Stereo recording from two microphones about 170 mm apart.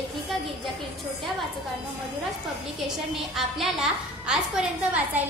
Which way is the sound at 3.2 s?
Centre (ahead or behind).